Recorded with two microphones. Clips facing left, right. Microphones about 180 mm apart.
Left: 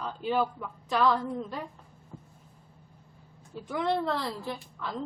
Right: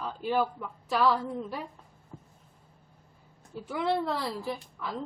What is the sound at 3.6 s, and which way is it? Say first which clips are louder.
A woman's voice: even; 5° right (ahead or behind).